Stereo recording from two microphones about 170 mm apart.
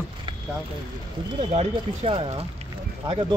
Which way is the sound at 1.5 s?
35° right (ahead or behind).